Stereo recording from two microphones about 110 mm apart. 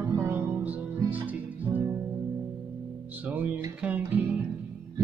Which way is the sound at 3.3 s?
15° right (ahead or behind).